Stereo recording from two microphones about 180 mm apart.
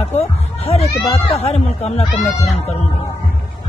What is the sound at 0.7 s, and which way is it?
Speech, 35° left (ahead or behind).